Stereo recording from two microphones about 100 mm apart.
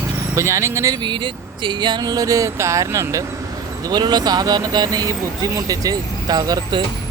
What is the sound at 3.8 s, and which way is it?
Speech, 45° right (ahead or behind).